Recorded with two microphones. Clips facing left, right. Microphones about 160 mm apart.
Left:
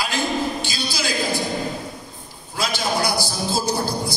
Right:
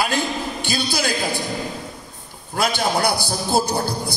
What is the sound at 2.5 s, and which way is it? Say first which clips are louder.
A man's voice: right 3 dB; 60° right (ahead or behind).